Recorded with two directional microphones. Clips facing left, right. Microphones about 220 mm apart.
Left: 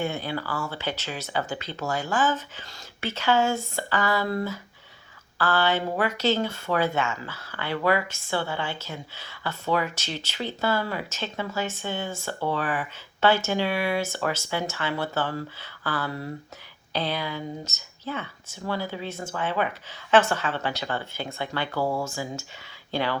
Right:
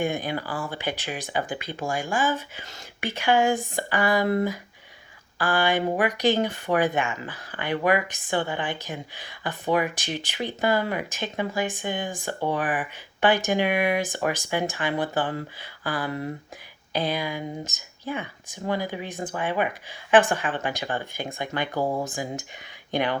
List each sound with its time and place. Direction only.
0.0 s speech: 15° right (ahead or behind)